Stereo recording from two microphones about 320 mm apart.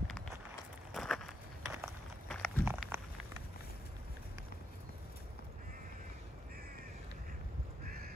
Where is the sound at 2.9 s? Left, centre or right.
Centre.